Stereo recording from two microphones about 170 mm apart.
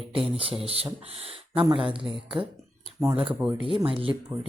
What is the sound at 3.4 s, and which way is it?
Speech, 5° right (ahead or behind).